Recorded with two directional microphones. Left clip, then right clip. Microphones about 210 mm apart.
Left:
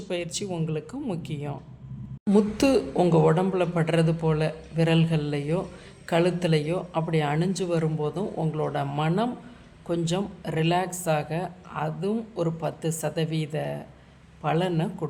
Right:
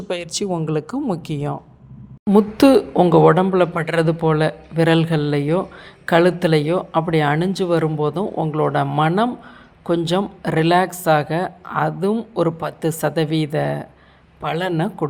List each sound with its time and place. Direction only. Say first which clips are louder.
0.1 s speech: right 7 dB; 25° right (ahead or behind)